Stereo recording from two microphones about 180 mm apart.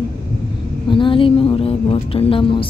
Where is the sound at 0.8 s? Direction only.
30° left (ahead or behind).